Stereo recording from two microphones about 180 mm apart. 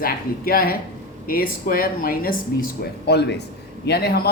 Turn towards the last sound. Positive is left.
turn(degrees=60)  # may be behind; listen again after turning